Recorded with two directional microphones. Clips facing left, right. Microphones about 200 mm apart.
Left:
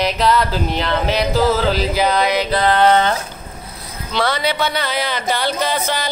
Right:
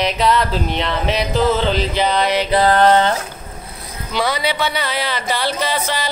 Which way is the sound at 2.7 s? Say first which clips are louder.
Even; 40° right (ahead or behind).